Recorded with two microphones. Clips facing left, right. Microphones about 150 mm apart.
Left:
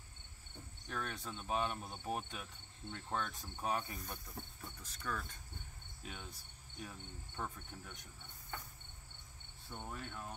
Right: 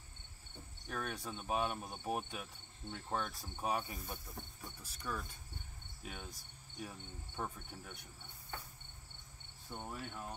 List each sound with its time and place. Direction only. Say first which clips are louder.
0.8 s speech: right 1 dB; 10° right (ahead or behind)
6.0 s cricket: right 1 dB; 15° right (ahead or behind)
9.7 s speech: right 1 dB; 10° right (ahead or behind)